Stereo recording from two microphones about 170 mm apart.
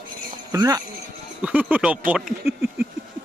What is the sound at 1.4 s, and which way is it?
Speech, 10° right (ahead or behind).